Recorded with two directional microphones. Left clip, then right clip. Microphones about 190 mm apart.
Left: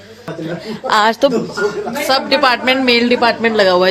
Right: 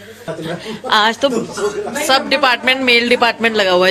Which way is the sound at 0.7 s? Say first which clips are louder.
Left 1 dB; 25° left (ahead or behind).